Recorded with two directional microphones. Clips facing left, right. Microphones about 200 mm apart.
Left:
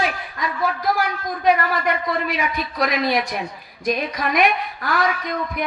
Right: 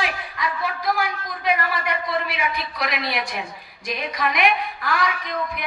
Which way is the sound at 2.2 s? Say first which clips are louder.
Left 3 dB; 40° left (ahead or behind).